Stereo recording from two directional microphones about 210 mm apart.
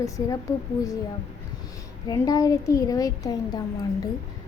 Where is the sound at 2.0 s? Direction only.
15° left (ahead or behind).